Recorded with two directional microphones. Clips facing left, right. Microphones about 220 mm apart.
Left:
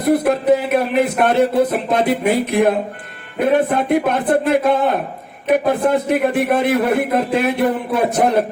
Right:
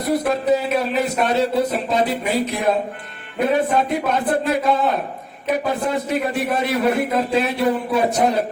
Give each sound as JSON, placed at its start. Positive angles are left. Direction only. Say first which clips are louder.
{"t": 0.0, "sound": "a man's voice", "louder": "left 4 dB", "side_deg": 55}